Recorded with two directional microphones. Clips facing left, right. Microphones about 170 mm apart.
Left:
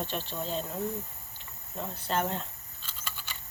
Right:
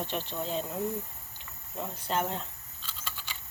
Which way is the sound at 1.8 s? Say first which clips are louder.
Even; 10° right (ahead or behind).